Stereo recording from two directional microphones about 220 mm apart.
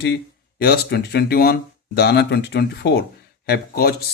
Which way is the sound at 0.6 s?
45° left (ahead or behind).